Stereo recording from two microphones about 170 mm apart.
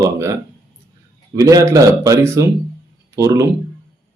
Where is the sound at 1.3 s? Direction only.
20° right (ahead or behind).